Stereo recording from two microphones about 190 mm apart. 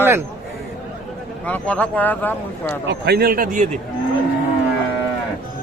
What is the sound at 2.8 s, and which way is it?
Speech, 60° right (ahead or behind).